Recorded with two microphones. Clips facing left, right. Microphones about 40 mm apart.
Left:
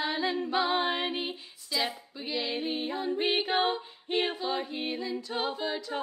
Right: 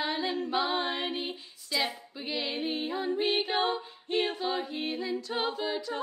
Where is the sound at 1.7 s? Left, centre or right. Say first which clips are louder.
Right 1 dB; centre.